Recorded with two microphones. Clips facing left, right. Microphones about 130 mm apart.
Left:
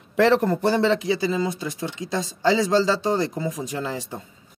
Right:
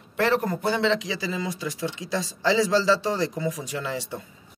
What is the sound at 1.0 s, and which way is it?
Speech, 30° left (ahead or behind).